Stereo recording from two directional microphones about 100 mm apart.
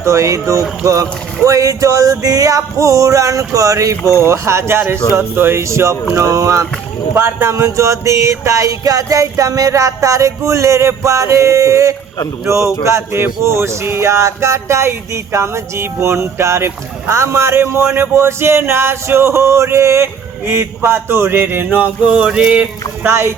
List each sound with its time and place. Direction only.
0.0 s music: 30° right (ahead or behind)
4.1 s speech: 30° right (ahead or behind)
6.1 s music: 35° right (ahead or behind)
12.5 s speech: 30° right (ahead or behind); by 22.7 s 10° right (ahead or behind)
23.0 s speech: 25° right (ahead or behind)